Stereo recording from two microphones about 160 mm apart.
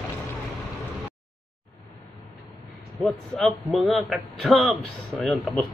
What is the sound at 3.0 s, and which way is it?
A man's voice, centre (ahead or behind).